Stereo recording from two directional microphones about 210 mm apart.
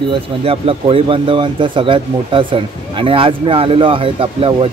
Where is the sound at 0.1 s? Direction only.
25° right (ahead or behind).